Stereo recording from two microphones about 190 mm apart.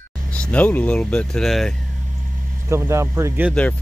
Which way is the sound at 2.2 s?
45° right (ahead or behind).